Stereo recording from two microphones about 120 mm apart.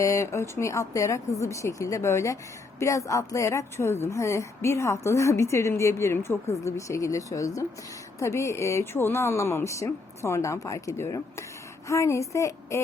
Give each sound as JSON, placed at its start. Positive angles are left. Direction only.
{"t": 0.0, "sound": "a woman's voice", "side_deg": 25}